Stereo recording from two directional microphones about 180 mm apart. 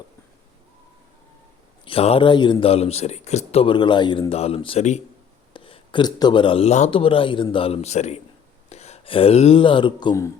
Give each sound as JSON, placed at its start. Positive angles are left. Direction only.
{"t": 1.8, "sound": "a man's voice", "side_deg": 30}